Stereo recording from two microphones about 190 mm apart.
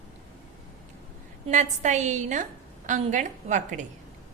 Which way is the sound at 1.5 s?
40° right (ahead or behind).